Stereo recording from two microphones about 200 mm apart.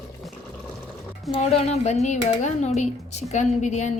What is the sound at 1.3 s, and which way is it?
A woman's voice, 30° left (ahead or behind).